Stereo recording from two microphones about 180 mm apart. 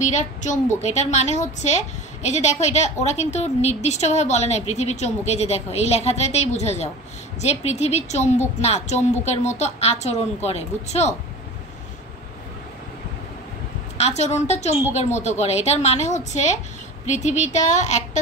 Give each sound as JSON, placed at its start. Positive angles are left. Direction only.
{"t": 0.1, "sound": "a woman's voice", "side_deg": 40}
{"t": 13.9, "sound": "a woman's voice", "side_deg": 35}